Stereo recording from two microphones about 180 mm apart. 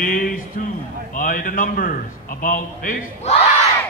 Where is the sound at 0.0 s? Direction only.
50° left (ahead or behind).